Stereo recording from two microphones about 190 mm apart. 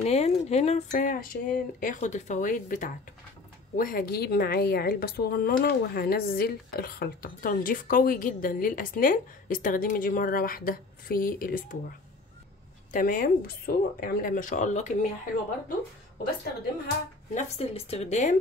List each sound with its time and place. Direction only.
0.0 s a woman's voice: 35° left (ahead or behind)
12.9 s a woman's voice: 45° left (ahead or behind)
16.8 s speech: 40° left (ahead or behind)